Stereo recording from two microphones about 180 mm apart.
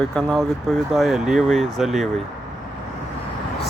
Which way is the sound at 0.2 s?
5° left (ahead or behind).